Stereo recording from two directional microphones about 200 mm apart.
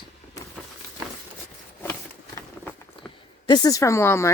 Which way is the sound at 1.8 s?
10° left (ahead or behind).